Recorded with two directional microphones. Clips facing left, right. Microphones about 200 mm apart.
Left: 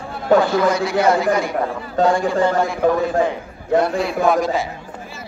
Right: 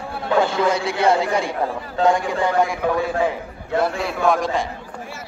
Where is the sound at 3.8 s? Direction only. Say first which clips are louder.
Left 2 dB; centre (ahead or behind).